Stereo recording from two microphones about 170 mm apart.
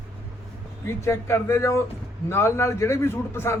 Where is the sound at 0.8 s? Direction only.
15° left (ahead or behind).